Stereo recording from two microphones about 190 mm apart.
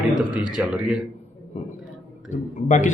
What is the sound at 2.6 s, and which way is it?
Speech, 40° left (ahead or behind).